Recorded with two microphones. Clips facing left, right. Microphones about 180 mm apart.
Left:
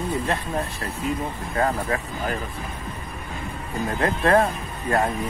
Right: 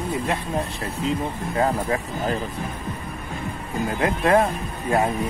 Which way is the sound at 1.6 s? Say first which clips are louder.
Right 1 dB; 20° right (ahead or behind).